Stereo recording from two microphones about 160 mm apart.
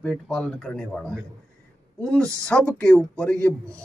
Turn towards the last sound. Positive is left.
turn(degrees=5)  # may be behind; listen again after turning